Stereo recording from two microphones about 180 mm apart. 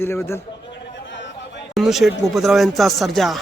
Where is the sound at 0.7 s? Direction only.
85° left.